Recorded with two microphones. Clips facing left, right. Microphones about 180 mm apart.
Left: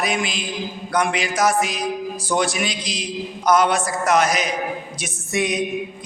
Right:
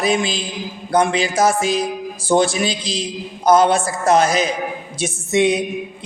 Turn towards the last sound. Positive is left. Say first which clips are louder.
# right 6 dB
turn(degrees=-25)  # may be behind; listen again after turning